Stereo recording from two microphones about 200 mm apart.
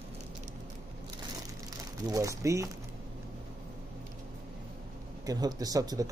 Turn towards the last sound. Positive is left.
turn(degrees=-20)  # may be behind; listen again after turning